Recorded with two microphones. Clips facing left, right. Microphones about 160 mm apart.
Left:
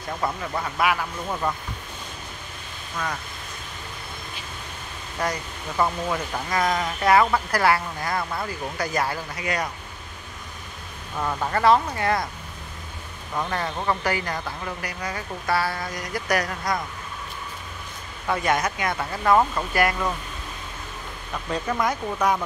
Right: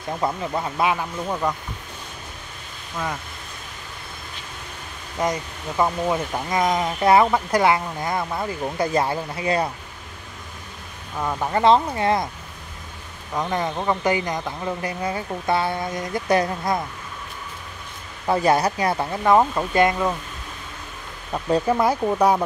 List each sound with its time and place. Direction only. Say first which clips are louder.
0.2 s speech: right 3 dB; 20° right (ahead or behind)
5.2 s speech: right 4 dB; 20° right (ahead or behind)
11.1 s speech: right 2 dB; 10° right (ahead or behind)
13.3 s speech: right 3 dB; 15° right (ahead or behind)
18.2 s speech: right 5 dB; 30° right (ahead or behind)
19.2 s speech: right 2 dB; 20° right (ahead or behind)
21.3 s speech: right 7 dB; 30° right (ahead or behind)